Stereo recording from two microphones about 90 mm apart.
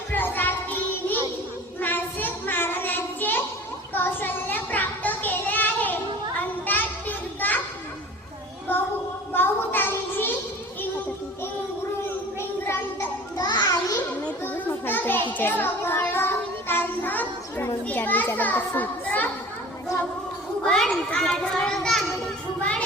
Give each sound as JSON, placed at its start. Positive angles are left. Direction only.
{"t": 0.1, "sound": "child singing", "side_deg": 20}
{"t": 1.8, "sound": "child singing", "side_deg": 20}
{"t": 3.9, "sound": "a sound", "side_deg": 20}
{"t": 6.7, "sound": "children playing", "side_deg": 20}
{"t": 8.7, "sound": "a sound", "side_deg": 25}
{"t": 9.3, "sound": "child singing", "side_deg": 25}
{"t": 12.4, "sound": "child singing", "side_deg": 25}
{"t": 13.3, "sound": "children playing", "side_deg": 45}
{"t": 14.4, "sound": "children playing", "side_deg": 20}
{"t": 15.3, "sound": "child singing", "side_deg": 20}
{"t": 17.8, "sound": "children playing", "side_deg": 20}
{"t": 20.7, "sound": "a sound", "side_deg": 10}